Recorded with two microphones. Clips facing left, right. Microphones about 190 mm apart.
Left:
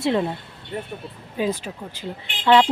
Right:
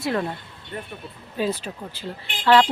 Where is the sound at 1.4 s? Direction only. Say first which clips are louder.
Left 1 dB; 15° left (ahead or behind).